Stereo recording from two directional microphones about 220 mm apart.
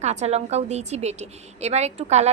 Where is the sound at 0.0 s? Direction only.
30° right (ahead or behind).